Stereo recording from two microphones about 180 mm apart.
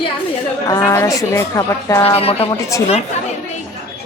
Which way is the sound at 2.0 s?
35° left (ahead or behind).